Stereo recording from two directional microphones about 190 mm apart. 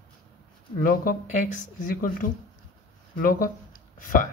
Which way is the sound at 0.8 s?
50° left (ahead or behind).